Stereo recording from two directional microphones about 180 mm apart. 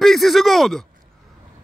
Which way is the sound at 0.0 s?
Centre (ahead or behind).